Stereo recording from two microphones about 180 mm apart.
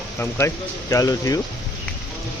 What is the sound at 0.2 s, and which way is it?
Speech, 15° left (ahead or behind).